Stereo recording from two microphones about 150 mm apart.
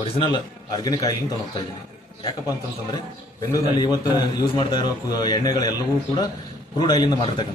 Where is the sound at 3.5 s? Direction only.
30° left (ahead or behind).